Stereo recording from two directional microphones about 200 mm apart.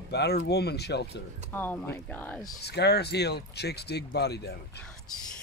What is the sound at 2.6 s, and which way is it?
Speech, 55° left (ahead or behind).